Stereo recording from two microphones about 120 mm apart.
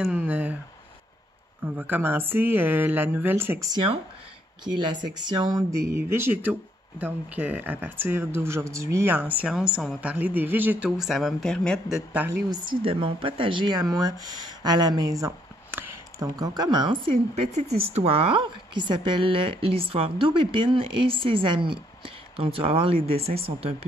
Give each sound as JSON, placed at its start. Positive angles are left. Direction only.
{"t": 0.0, "sound": "speech", "side_deg": -15}
{"t": 1.8, "sound": "speech", "side_deg": -15}
{"t": 3.7, "sound": "a woman's voice", "side_deg": -45}
{"t": 5.1, "sound": "speech", "side_deg": -35}
{"t": 9.4, "sound": "speech", "side_deg": -5}
{"t": 11.0, "sound": "speech", "side_deg": 0}
{"t": 11.9, "sound": "speech", "side_deg": -10}
{"t": 12.3, "sound": "speech", "side_deg": -35}
{"t": 12.8, "sound": "speech", "side_deg": -50}
{"t": 17.7, "sound": "a woman's voice", "side_deg": -55}